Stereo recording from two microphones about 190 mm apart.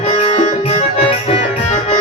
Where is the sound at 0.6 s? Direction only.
30° left (ahead or behind).